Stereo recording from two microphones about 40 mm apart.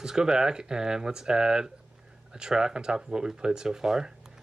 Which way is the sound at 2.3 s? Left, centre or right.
Centre.